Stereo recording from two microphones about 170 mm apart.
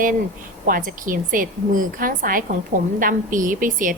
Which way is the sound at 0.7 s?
55° right (ahead or behind).